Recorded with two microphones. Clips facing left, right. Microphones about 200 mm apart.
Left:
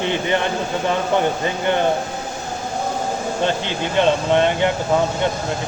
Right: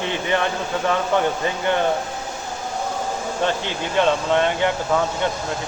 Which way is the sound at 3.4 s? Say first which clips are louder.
Left 1 dB; 25° left (ahead or behind).